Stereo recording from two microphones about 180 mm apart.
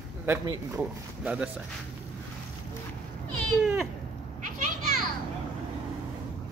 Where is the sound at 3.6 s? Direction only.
5° right (ahead or behind).